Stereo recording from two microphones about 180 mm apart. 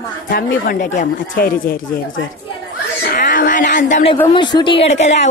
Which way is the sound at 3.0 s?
50° left (ahead or behind).